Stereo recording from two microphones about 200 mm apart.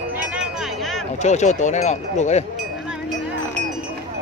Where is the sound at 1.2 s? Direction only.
35° left (ahead or behind).